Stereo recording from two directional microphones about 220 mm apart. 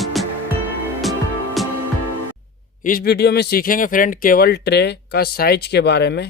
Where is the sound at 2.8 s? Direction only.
45° left (ahead or behind).